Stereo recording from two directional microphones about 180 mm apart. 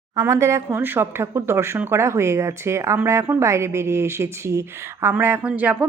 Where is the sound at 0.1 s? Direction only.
15° right (ahead or behind).